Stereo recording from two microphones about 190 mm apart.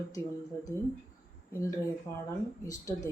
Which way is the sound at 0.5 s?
15° left (ahead or behind).